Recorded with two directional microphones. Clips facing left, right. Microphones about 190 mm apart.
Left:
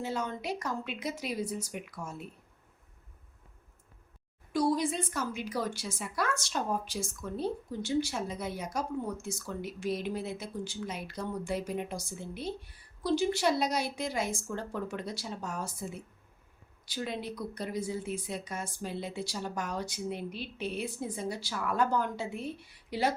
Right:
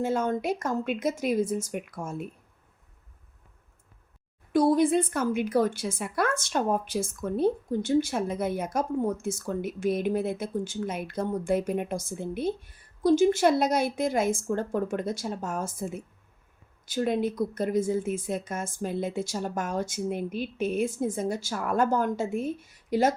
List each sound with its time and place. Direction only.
0.0 s speech: 50° right (ahead or behind)
4.5 s a woman's voice: 55° right (ahead or behind)